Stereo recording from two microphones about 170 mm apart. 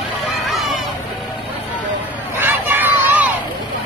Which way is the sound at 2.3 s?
10° right (ahead or behind).